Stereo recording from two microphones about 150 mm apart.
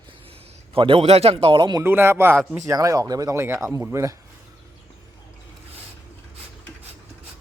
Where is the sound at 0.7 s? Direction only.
40° right (ahead or behind).